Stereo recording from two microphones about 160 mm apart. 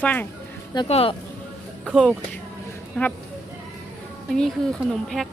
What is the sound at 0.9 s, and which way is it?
Speech, 35° left (ahead or behind).